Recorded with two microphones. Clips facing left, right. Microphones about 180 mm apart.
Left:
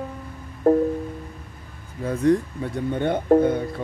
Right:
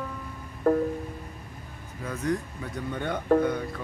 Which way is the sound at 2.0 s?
30° left (ahead or behind).